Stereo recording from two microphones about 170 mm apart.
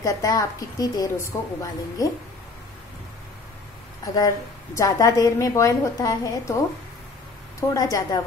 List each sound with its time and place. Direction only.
0.0 s a woman's voice: 20° left (ahead or behind)
4.0 s a woman's voice: 20° left (ahead or behind)
7.7 s a woman's voice: 20° left (ahead or behind)